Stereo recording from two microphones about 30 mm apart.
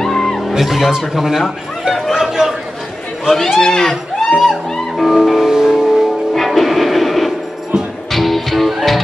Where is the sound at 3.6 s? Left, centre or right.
Centre.